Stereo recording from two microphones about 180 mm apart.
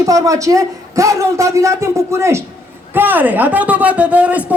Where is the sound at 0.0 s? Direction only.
20° right (ahead or behind).